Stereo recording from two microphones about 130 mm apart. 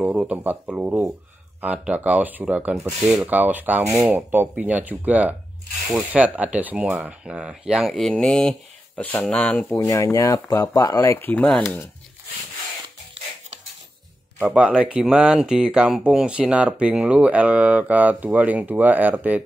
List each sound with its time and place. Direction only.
0.0 s speech: 10° right (ahead or behind); by 9.8 s 10° left (ahead or behind)
9.8 s speech: 25° left (ahead or behind)
14.4 s speech: 10° right (ahead or behind)